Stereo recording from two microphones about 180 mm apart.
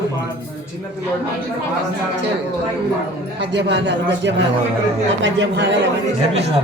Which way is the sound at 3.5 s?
75° right (ahead or behind).